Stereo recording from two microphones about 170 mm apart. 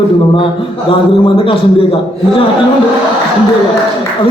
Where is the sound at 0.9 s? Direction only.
30° left (ahead or behind).